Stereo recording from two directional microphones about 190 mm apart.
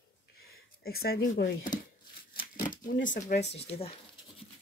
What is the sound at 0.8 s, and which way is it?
Speech, 55° left (ahead or behind).